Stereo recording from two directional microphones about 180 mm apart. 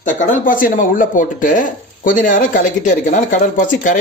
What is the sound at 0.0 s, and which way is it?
Speech, 45° left (ahead or behind).